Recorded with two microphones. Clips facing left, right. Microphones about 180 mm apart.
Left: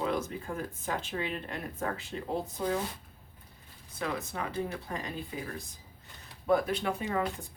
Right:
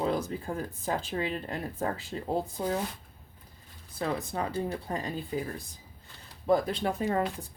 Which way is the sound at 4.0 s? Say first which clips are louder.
Right 3 dB; 35° right (ahead or behind).